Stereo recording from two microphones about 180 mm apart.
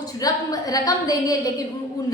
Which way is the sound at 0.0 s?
20° left (ahead or behind).